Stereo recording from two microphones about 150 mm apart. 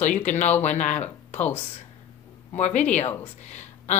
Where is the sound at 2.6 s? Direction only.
50° left (ahead or behind).